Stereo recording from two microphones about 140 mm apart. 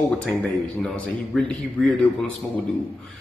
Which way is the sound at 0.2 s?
5° left (ahead or behind).